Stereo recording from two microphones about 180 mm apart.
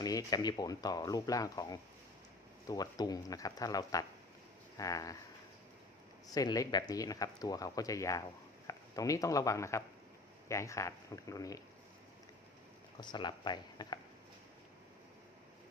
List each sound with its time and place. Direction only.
0.0 s speech: 20° left (ahead or behind)
6.3 s speech: 20° left (ahead or behind)
13.0 s speech: 25° left (ahead or behind)